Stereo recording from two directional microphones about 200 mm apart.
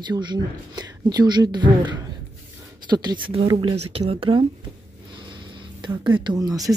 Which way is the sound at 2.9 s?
20° right (ahead or behind).